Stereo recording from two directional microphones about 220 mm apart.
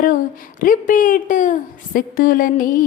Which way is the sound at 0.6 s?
40° left (ahead or behind).